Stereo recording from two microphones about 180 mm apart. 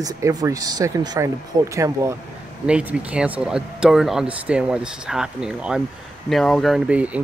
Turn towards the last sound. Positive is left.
turn(degrees=-5)  # may be behind; listen again after turning